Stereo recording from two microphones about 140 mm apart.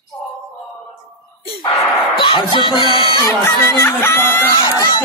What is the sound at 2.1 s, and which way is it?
Speech, 35° left (ahead or behind).